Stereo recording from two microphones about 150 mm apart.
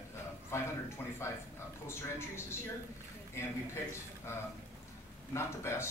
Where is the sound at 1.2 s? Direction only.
20° left (ahead or behind).